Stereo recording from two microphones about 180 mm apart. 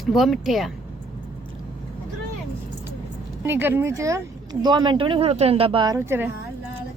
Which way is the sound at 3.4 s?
10° right (ahead or behind).